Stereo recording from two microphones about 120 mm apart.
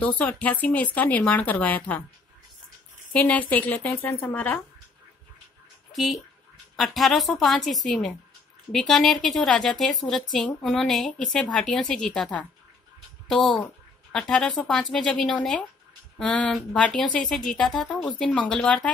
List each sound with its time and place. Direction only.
0.0 s speech: 15° left (ahead or behind)
3.1 s speech: 10° left (ahead or behind)
5.9 s speech: centre (ahead or behind)